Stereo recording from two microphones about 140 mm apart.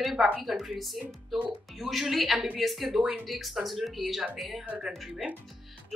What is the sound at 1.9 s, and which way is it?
Speech, centre (ahead or behind).